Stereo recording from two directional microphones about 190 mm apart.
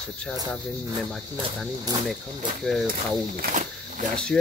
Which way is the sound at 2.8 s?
45° right (ahead or behind).